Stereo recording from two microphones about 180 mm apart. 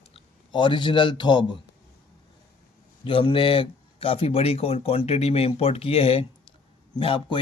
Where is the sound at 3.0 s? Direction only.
30° left (ahead or behind).